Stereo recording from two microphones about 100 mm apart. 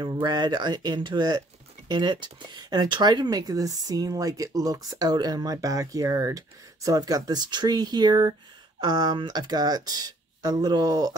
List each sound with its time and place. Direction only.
0.0 s speech: 50° right (ahead or behind)